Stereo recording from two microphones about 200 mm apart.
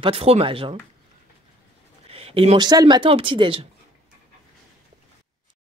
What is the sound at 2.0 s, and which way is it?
Speech, 30° right (ahead or behind).